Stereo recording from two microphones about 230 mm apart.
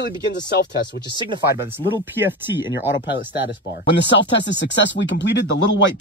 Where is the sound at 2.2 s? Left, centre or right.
Centre.